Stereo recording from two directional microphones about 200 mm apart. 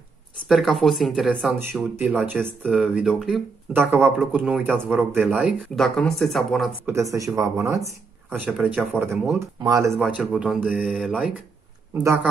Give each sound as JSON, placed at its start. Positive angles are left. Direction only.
{"t": 0.5, "sound": "speech", "side_deg": 0}
{"t": 5.1, "sound": "speech", "side_deg": -10}
{"t": 6.9, "sound": "speech", "side_deg": -15}
{"t": 8.3, "sound": "speech", "side_deg": -5}
{"t": 10.0, "sound": "speech", "side_deg": 0}
{"t": 12.0, "sound": "speech", "side_deg": -15}